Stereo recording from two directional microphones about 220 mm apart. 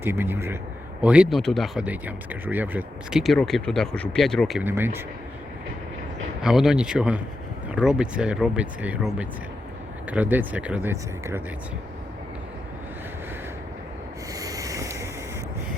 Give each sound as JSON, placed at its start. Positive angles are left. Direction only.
{"t": 0.0, "sound": "speech", "side_deg": -10}
{"t": 6.4, "sound": "speech", "side_deg": 0}
{"t": 14.3, "sound": "sanding", "side_deg": -15}